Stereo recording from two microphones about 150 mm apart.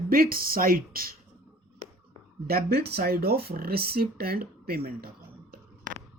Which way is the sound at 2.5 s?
90° right.